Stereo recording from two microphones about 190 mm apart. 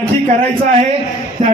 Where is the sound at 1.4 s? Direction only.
40° right (ahead or behind).